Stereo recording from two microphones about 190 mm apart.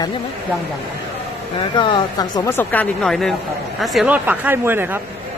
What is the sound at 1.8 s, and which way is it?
Speech, 25° left (ahead or behind).